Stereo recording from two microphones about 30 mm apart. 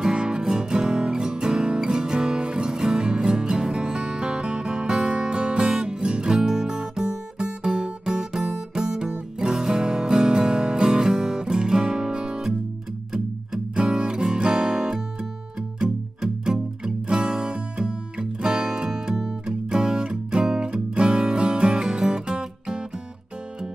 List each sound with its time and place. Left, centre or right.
0.1 s music: right
13.7 s music: right